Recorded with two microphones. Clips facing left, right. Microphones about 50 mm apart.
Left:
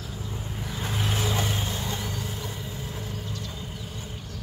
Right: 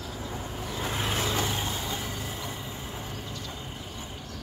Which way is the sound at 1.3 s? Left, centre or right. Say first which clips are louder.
Left 1 dB; centre.